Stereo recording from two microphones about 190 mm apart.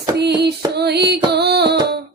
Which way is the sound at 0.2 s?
60° right (ahead or behind).